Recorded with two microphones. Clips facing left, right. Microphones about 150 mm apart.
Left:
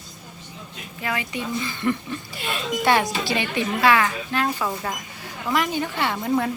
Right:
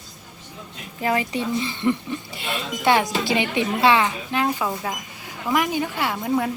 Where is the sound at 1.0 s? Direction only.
35° right (ahead or behind).